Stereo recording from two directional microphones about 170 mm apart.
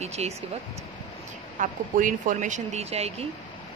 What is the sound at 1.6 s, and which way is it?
Speech, 50° right (ahead or behind).